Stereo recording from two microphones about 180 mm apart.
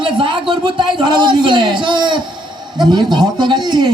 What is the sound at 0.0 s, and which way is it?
A man's voice, 25° right (ahead or behind).